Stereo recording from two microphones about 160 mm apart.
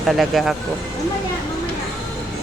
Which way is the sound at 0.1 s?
Centre (ahead or behind).